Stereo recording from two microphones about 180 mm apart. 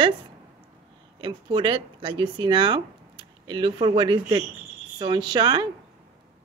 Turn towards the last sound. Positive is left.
turn(degrees=-25)  # may be behind; listen again after turning